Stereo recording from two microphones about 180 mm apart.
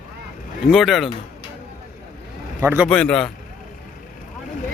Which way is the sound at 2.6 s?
15° right (ahead or behind).